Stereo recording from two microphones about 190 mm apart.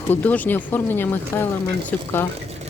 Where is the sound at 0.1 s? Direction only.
10° left (ahead or behind).